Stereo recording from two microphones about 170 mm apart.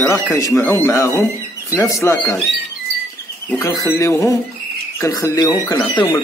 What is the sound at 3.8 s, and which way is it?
A man's voice, 15° left (ahead or behind).